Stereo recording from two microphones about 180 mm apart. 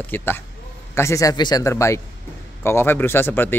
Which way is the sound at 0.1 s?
10° left (ahead or behind).